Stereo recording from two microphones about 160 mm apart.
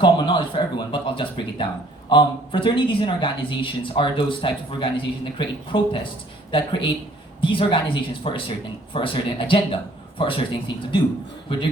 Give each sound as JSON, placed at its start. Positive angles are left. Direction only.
{"t": 0.0, "sound": "speech", "side_deg": 30}